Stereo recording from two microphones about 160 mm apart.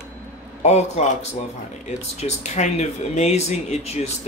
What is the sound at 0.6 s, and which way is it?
Speech, 45° left (ahead or behind).